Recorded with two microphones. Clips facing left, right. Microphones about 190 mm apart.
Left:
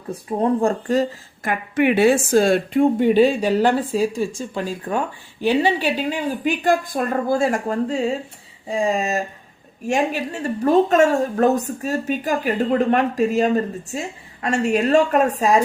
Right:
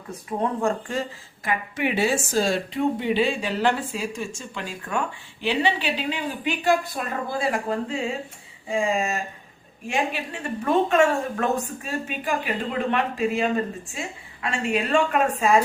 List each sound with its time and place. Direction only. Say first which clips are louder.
0.1 s a woman's voice: left 7 dB; 35° left (ahead or behind)
1.5 s a woman's voice: left 7 dB; 55° left (ahead or behind); by 15.5 s 40° left (ahead or behind)